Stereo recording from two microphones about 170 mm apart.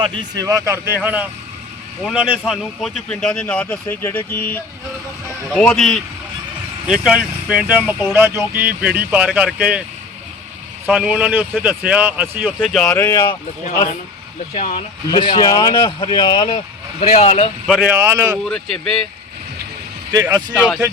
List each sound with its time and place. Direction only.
0.2 s speech: 20° right (ahead or behind)
10.8 s speech: 5° right (ahead or behind)
12.5 s speech: 5° left (ahead or behind)
13.0 s speech: 15° left (ahead or behind)
14.5 s speech: 35° left (ahead or behind)
17.7 s speech: centre (ahead or behind)
18.0 s speech: 15° right (ahead or behind)
18.4 s speech: 5° left (ahead or behind)
20.1 s speech: 20° right (ahead or behind)
20.5 s speech: 5° right (ahead or behind)